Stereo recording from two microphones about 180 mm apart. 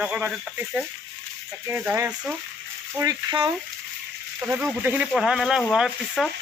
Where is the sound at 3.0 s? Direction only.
20° right (ahead or behind).